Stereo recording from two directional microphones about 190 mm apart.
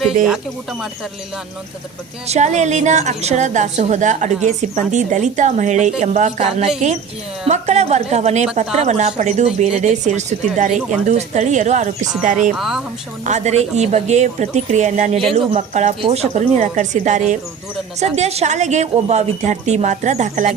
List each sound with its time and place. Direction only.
2.2 s a woman's voice: 35° right (ahead or behind)
12.5 s speech: centre (ahead or behind)
13.2 s a woman's voice: 35° right (ahead or behind)